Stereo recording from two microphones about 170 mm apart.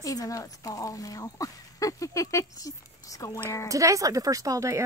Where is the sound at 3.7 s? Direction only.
20° right (ahead or behind).